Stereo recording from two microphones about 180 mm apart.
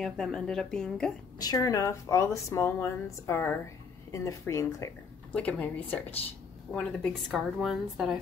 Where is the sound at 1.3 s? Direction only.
20° left (ahead or behind).